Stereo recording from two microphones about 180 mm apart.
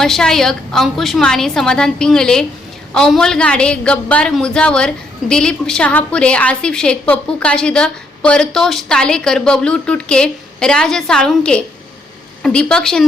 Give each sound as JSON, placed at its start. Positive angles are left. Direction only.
{"t": 0.0, "sound": "a woman's voice", "side_deg": 5}